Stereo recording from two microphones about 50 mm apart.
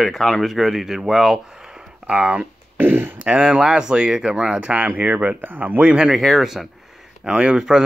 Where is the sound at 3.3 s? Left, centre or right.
Centre; by 5.8 s right.